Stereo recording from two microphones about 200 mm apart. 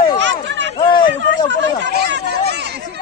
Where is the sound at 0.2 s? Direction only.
65° right (ahead or behind).